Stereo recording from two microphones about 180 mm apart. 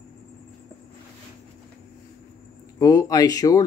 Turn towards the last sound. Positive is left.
turn(degrees=20)  # may be behind; listen again after turning